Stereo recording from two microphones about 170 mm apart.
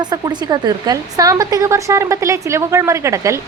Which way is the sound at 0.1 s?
25° right (ahead or behind).